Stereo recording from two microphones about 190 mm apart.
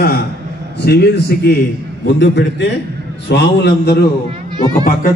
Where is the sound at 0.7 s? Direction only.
60° left (ahead or behind).